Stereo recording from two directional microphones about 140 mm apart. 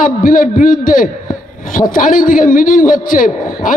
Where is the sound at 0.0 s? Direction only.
70° left (ahead or behind).